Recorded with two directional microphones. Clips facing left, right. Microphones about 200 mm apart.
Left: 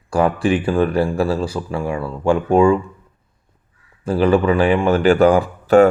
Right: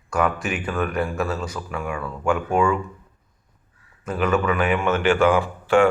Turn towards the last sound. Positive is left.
turn(degrees=40)  # may be behind; listen again after turning